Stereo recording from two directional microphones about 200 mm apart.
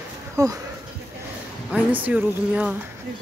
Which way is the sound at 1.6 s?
10° right (ahead or behind).